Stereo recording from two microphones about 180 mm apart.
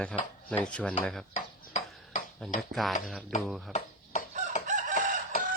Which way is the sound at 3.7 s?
40° left (ahead or behind).